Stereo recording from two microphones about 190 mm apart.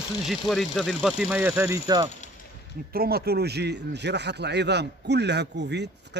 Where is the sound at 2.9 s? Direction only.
55° right (ahead or behind).